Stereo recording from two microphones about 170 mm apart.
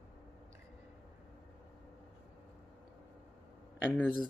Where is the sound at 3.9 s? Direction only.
5° left (ahead or behind).